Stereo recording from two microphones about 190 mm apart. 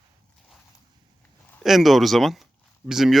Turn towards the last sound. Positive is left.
turn(degrees=0)  # may be behind; listen again after turning